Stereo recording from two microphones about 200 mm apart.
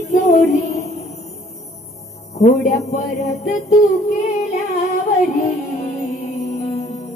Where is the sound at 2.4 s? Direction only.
35° left (ahead or behind).